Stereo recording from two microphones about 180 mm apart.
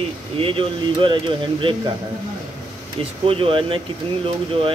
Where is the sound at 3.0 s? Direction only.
30° right (ahead or behind).